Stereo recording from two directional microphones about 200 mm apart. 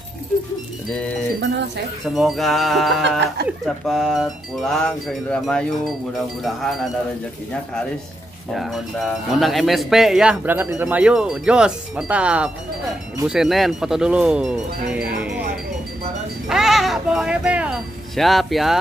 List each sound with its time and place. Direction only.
2.1 s speech: centre (ahead or behind)
3.0 s music: 60° right (ahead or behind)
3.6 s speech: centre (ahead or behind)
8.5 s speech: centre (ahead or behind)
16.4 s music: centre (ahead or behind)